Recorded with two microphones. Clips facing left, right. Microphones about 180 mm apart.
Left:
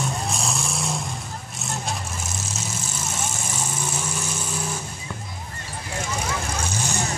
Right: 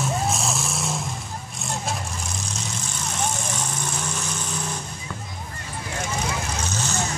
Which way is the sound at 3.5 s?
10° left (ahead or behind).